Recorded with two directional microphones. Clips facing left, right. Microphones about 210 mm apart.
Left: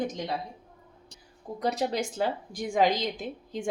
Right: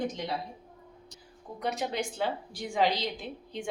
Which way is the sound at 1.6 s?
35° left (ahead or behind).